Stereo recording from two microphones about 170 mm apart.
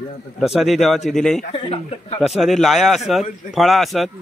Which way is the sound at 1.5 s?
35° left (ahead or behind).